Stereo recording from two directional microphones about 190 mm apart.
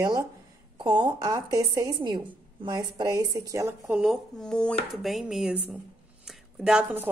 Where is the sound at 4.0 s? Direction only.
Centre (ahead or behind).